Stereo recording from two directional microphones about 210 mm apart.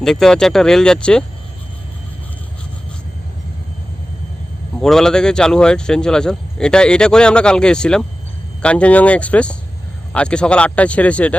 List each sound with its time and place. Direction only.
0.0 s speech: centre (ahead or behind)
4.8 s speech: centre (ahead or behind)